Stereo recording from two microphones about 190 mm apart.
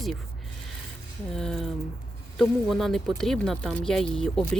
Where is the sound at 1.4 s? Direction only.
Centre (ahead or behind).